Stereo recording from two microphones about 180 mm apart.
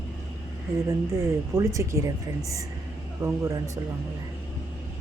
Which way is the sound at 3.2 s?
15° right (ahead or behind).